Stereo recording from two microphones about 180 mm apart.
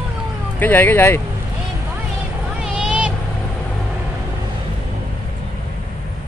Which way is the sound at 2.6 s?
5° right (ahead or behind).